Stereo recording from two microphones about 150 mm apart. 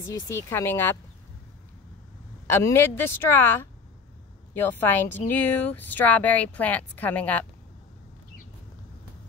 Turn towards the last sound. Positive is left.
turn(degrees=10)  # may be behind; listen again after turning